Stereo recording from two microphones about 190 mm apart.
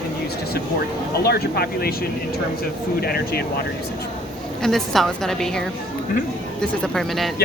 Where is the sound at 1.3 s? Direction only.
55° left (ahead or behind).